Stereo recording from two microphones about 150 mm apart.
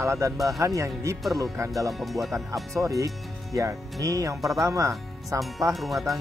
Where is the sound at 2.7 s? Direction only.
20° right (ahead or behind).